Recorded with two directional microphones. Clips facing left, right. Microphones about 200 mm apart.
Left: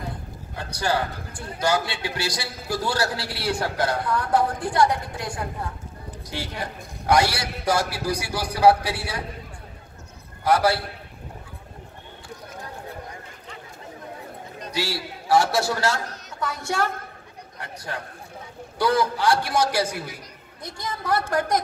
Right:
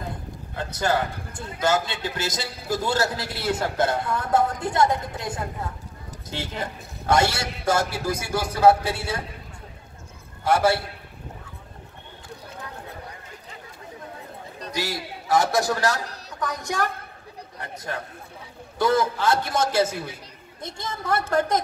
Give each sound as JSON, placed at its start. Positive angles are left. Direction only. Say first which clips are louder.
{"t": 0.6, "sound": "a man's voice", "louder": "right 1 dB", "side_deg": -20}
{"t": 10.4, "sound": "a man's voice", "louder": "even", "side_deg": -25}
{"t": 14.7, "sound": "a woman's voice", "louder": "left 1 dB", "side_deg": -20}
{"t": 18.8, "sound": "a man's voice", "louder": "even", "side_deg": -20}